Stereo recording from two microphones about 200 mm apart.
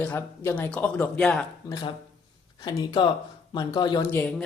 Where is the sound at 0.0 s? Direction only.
10° left (ahead or behind).